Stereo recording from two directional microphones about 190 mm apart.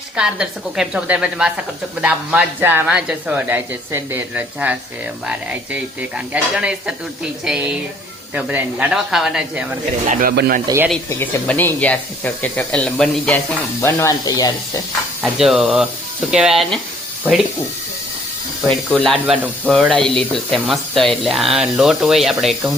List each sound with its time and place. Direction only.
0.2 s speech: 5° right (ahead or behind)
10.2 s speech: 50° right (ahead or behind)
11.1 s speech: 10° left (ahead or behind)
15.2 s speech: centre (ahead or behind)
18.7 s speech: 5° left (ahead or behind)
19.2 s speech: 10° right (ahead or behind)
19.7 s speech: centre (ahead or behind)